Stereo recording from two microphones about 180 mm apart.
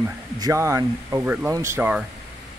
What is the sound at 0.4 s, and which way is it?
Speech, 15° right (ahead or behind).